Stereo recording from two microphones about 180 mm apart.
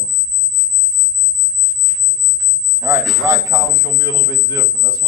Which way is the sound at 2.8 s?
15° right (ahead or behind).